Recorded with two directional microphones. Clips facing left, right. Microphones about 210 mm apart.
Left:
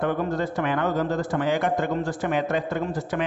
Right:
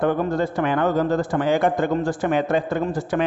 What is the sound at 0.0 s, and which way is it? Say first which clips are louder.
A man's voice: right 4 dB; 30° right (ahead or behind).